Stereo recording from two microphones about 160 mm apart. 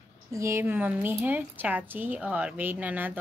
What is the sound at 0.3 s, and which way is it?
A woman's voice, 20° right (ahead or behind).